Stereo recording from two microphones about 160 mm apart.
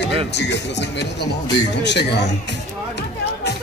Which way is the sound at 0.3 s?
90° left.